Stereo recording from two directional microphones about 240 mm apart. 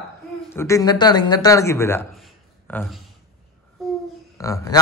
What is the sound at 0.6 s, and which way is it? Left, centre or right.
A man's voice, centre.